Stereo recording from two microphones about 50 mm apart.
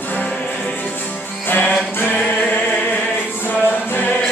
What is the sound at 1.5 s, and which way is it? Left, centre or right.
Music, left.